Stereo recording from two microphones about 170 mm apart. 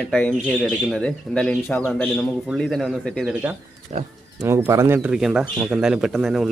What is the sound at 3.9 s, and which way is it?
Speech, 40° right (ahead or behind).